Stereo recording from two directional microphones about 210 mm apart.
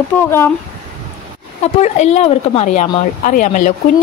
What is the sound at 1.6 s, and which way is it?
Speech, 30° left (ahead or behind).